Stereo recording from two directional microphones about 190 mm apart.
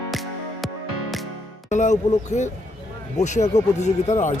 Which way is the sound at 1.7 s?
40° left (ahead or behind).